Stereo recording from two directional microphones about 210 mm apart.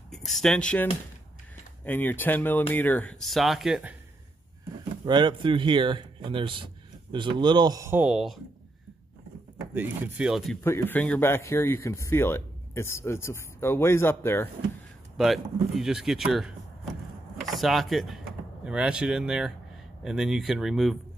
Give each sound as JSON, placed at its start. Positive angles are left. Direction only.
{"t": 0.1, "sound": "speech", "side_deg": 0}
{"t": 1.9, "sound": "speech", "side_deg": 10}
{"t": 5.0, "sound": "speech", "side_deg": -20}
{"t": 9.8, "sound": "speech", "side_deg": -10}
{"t": 10.6, "sound": "speech", "side_deg": 10}
{"t": 15.1, "sound": "speech", "side_deg": 0}